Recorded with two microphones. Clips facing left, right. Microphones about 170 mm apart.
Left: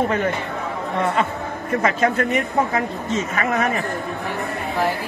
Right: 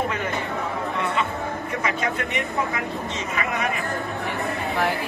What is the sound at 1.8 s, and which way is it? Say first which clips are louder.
A man's voice: left 8 dB; 45° left (ahead or behind).